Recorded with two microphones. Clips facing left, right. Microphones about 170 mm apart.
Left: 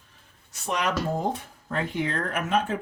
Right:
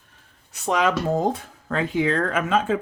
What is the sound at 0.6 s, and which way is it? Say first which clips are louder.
Speech: right 5 dB; 90° right.